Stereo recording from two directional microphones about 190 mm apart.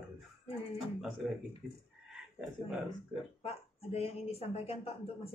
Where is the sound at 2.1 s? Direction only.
5° right (ahead or behind).